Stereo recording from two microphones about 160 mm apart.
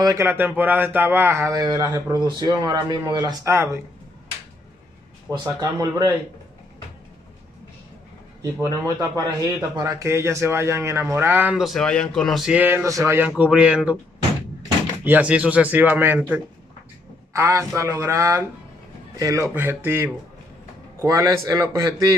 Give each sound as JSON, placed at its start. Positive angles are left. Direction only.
{"t": 0.0, "sound": "a man's voice", "side_deg": -20}
{"t": 5.3, "sound": "a man's voice", "side_deg": -25}
{"t": 8.4, "sound": "speech", "side_deg": -20}
{"t": 13.3, "sound": "speech", "side_deg": -5}
{"t": 15.0, "sound": "a man's voice", "side_deg": -10}